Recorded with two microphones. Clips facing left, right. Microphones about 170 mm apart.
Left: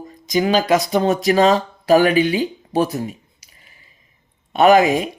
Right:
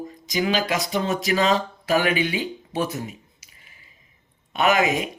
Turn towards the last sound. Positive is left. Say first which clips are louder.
# left 8 dB
turn(degrees=35)  # may be behind; listen again after turning